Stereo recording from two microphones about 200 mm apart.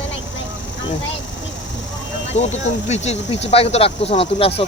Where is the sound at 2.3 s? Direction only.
35° left (ahead or behind).